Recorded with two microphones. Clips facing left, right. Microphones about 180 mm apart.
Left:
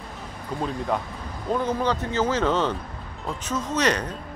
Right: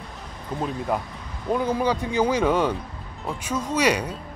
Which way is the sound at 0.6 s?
5° right (ahead or behind).